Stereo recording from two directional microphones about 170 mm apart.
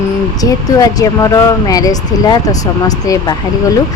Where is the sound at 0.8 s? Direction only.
20° left (ahead or behind).